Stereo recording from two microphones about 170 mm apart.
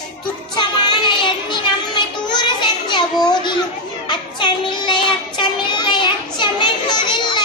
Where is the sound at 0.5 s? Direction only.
25° left (ahead or behind).